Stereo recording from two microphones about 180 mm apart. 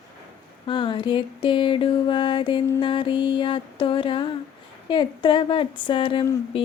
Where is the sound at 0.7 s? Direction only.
25° left (ahead or behind).